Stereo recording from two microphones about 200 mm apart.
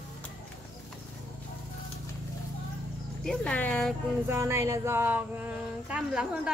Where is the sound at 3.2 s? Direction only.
5° left (ahead or behind).